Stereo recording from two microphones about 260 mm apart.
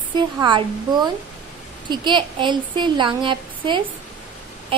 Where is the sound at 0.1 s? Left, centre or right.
Centre.